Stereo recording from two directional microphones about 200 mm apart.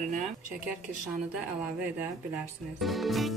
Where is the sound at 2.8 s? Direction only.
Centre (ahead or behind).